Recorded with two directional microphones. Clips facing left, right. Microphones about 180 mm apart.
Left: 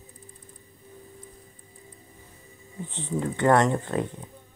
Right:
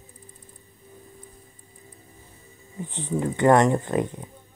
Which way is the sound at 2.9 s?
15° right (ahead or behind).